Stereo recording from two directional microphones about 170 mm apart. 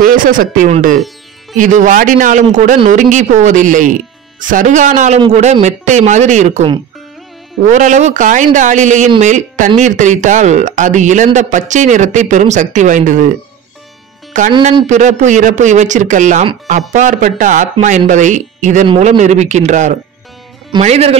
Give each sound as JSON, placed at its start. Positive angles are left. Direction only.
{"t": 0.0, "sound": "speech", "side_deg": -55}
{"t": 14.3, "sound": "a man's voice", "side_deg": -45}